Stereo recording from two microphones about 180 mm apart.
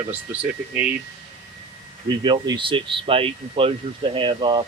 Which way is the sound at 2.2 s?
25° right (ahead or behind).